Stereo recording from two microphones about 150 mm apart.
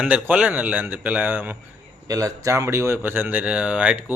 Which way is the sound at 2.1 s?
20° right (ahead or behind).